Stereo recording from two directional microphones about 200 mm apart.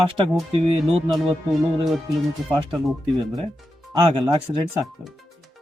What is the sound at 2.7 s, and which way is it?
Speech, 5° right (ahead or behind).